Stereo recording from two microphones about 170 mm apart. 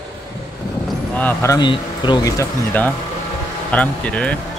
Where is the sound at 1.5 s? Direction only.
25° left (ahead or behind); by 4.3 s 5° left (ahead or behind).